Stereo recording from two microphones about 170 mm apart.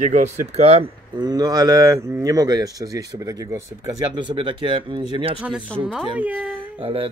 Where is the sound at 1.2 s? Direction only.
25° right (ahead or behind).